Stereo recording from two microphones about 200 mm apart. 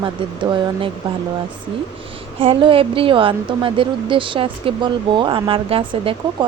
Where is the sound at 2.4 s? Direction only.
25° right (ahead or behind).